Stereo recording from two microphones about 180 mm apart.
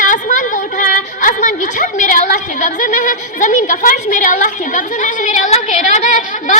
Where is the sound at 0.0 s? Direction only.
45° left (ahead or behind).